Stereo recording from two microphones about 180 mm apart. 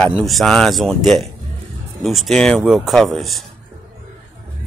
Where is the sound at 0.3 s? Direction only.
Centre (ahead or behind).